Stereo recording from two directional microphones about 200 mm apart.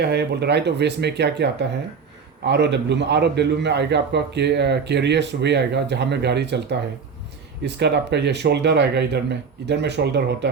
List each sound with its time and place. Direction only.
0.0 s a man's voice: 55° right (ahead or behind)
2.5 s a man's voice: 60° right (ahead or behind)